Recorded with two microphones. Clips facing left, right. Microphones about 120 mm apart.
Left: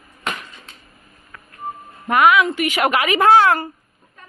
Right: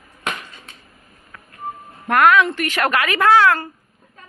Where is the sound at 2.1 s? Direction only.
5° left (ahead or behind).